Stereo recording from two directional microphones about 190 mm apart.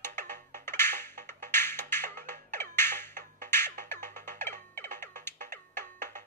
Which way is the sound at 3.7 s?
40° right (ahead or behind).